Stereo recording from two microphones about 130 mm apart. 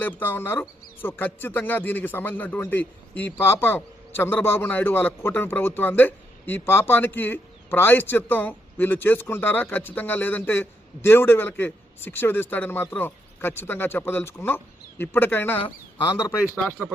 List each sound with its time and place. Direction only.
0.0 s a man's voice: 15° left (ahead or behind)